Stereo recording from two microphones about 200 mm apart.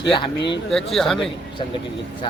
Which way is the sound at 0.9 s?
Centre (ahead or behind).